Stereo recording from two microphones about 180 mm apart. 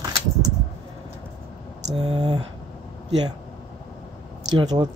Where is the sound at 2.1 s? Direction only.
25° right (ahead or behind).